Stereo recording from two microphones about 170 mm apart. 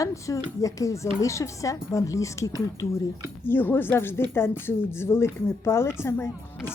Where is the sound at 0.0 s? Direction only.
20° left (ahead or behind).